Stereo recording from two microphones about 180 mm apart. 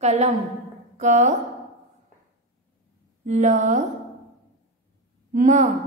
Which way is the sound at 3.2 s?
40° right (ahead or behind).